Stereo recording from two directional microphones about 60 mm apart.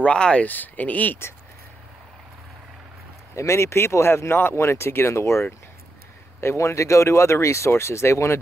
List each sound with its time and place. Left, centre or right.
0.0 s speech: centre
0.5 s speech: left
3.3 s speech: left
4.6 s speech: left